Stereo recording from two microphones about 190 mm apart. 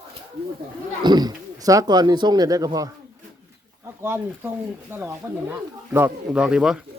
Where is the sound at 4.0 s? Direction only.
10° right (ahead or behind).